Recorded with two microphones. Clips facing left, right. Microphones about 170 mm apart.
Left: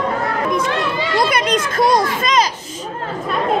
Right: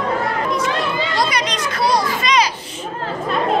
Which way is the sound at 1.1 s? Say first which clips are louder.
Left 8 dB; 50° left (ahead or behind).